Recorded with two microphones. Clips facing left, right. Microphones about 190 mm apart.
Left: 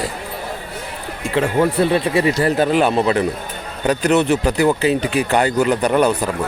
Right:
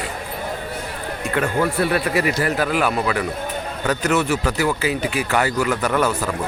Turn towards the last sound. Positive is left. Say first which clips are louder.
# left 4 dB
turn(degrees=15)  # may be behind; listen again after turning